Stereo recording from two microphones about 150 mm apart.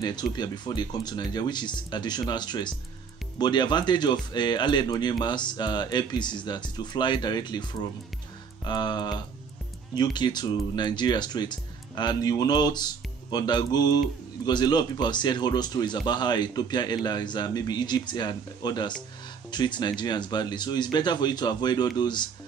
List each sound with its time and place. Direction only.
0.0 s speech: 30° left (ahead or behind)